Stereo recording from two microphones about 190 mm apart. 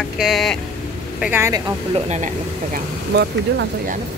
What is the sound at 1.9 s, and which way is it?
Speech, 35° right (ahead or behind).